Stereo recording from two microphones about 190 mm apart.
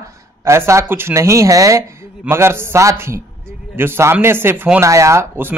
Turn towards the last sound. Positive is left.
turn(degrees=-10)  # may be behind; listen again after turning